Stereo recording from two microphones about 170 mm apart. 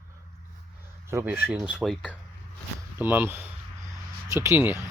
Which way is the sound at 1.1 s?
10° right (ahead or behind).